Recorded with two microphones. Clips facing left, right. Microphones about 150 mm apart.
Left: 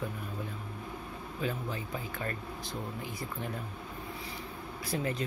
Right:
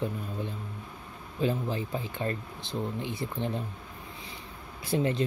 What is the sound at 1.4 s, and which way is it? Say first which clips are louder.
Speech: right 7 dB; 30° right (ahead or behind).